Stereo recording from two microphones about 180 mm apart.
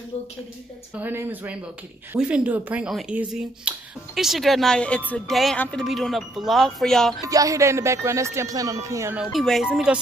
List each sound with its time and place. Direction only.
1.0 s speech: 10° right (ahead or behind)
7.2 s speech: 20° right (ahead or behind)
9.2 s speech: centre (ahead or behind)